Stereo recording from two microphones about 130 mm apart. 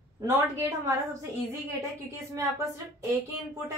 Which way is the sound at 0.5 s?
25° right (ahead or behind).